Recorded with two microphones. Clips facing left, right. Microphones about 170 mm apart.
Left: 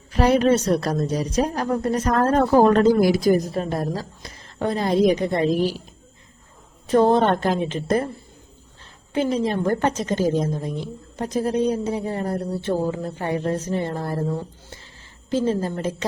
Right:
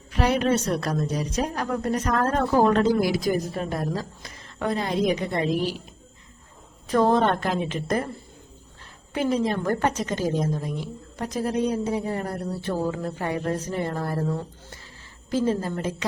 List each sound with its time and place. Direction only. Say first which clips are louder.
0.1 s a woman's voice: left 5 dB; 35° left (ahead or behind)
6.8 s speech: left 3 dB; 30° left (ahead or behind)
9.1 s speech: left 2 dB; 25° left (ahead or behind)
15.3 s speech: left 2 dB; 30° left (ahead or behind)